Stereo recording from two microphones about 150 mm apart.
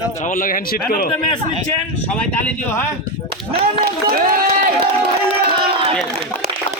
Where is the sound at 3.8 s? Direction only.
90° right; by 4.9 s 75° right (ahead or behind).